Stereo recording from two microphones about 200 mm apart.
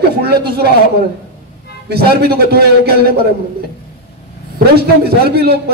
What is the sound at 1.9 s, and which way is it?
A man's voice, 55° right (ahead or behind).